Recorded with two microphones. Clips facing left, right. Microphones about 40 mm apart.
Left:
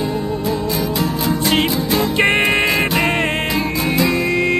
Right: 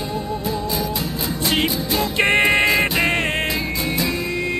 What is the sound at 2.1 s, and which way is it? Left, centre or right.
Music, centre.